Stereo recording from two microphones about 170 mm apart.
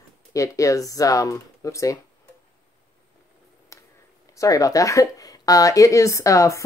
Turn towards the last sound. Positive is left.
turn(degrees=20)  # may be behind; listen again after turning